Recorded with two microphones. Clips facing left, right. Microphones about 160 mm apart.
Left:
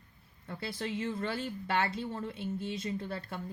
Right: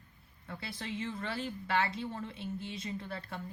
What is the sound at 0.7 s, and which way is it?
Speech, 40° left (ahead or behind).